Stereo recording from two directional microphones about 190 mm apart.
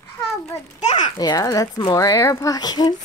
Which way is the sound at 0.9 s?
20° left (ahead or behind).